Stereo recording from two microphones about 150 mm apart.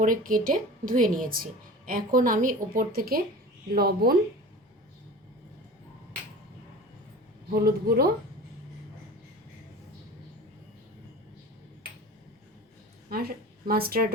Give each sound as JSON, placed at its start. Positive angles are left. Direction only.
{"t": 0.0, "sound": "a woman's voice", "side_deg": -65}
{"t": 3.7, "sound": "speech", "side_deg": -90}
{"t": 7.5, "sound": "speech", "side_deg": -90}
{"t": 13.1, "sound": "a woman's voice", "side_deg": -90}